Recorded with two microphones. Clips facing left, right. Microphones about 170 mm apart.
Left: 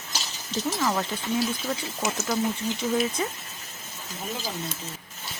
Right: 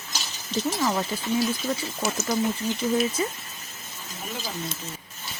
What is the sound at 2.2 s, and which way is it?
Speech, centre (ahead or behind).